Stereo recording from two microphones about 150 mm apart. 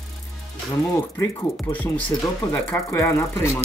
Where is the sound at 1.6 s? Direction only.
10° left (ahead or behind).